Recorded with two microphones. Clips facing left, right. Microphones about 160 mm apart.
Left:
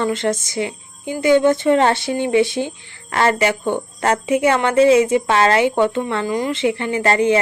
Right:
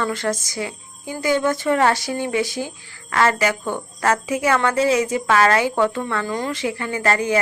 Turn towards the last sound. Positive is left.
turn(degrees=25)  # may be behind; listen again after turning